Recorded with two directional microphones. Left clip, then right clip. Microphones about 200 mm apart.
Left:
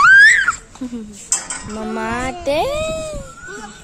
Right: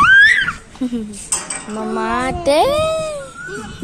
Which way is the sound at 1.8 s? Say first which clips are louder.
Right 4 dB; 20° left (ahead or behind).